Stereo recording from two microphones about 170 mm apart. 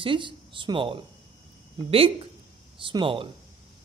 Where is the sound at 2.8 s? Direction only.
30° right (ahead or behind).